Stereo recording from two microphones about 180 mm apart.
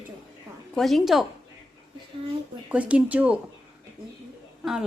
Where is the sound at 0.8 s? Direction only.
Centre (ahead or behind).